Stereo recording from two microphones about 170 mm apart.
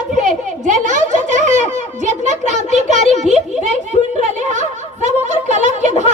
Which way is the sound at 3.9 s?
35° left (ahead or behind).